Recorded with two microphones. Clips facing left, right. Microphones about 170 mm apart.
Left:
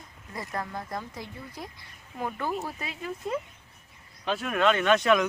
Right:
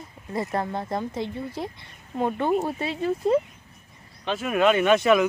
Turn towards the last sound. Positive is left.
turn(degrees=-5)  # may be behind; listen again after turning